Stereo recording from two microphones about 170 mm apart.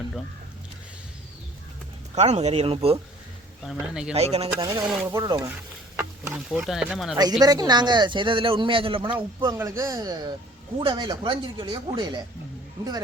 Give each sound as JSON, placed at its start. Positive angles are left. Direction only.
{"t": 2.1, "sound": "speech", "side_deg": -40}
{"t": 3.6, "sound": "speech", "side_deg": 0}
{"t": 4.1, "sound": "speech", "side_deg": -40}
{"t": 4.8, "sound": "speech", "side_deg": -5}
{"t": 5.0, "sound": "speech", "side_deg": -20}
{"t": 6.3, "sound": "speech", "side_deg": 0}
{"t": 7.2, "sound": "speech", "side_deg": -25}
{"t": 9.6, "sound": "speech", "side_deg": -20}